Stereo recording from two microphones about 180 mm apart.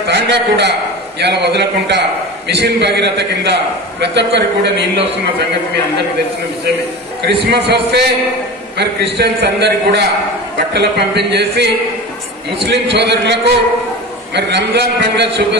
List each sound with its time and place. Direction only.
0.0 s a man's voice: 70° right (ahead or behind)
7.2 s a man's voice: 65° right (ahead or behind); by 15.4 s 80° right